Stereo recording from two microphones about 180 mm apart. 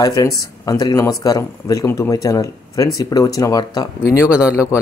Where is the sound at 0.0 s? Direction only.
20° left (ahead or behind).